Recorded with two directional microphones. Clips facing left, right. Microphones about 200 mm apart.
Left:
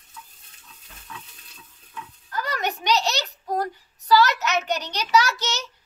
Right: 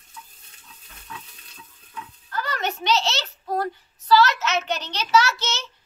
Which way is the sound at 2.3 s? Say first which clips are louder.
Even; 15° left (ahead or behind).